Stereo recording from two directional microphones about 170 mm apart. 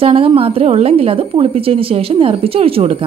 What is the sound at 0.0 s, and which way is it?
A woman's voice, 35° right (ahead or behind).